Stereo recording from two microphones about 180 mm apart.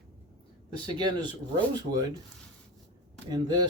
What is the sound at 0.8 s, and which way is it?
Speech, 25° right (ahead or behind).